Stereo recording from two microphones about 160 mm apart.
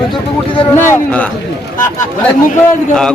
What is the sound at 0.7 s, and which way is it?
Speech, 15° left (ahead or behind).